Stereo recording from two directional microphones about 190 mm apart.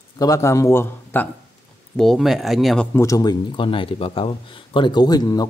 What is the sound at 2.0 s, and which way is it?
Speech, centre (ahead or behind).